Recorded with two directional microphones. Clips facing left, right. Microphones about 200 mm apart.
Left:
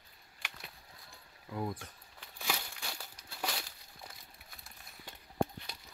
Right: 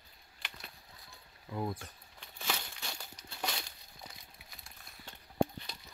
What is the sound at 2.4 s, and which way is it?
Crumpling, 10° left (ahead or behind).